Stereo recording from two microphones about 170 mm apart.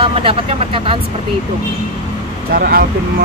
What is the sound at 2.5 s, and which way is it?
Speech, 60° right (ahead or behind).